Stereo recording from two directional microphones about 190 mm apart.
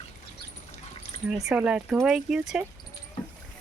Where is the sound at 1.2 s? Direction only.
5° right (ahead or behind).